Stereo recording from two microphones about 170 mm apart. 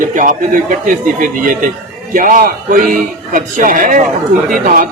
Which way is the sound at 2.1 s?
50° right (ahead or behind).